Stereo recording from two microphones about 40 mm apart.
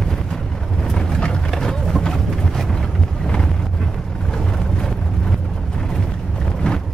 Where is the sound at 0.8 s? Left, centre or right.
Centre.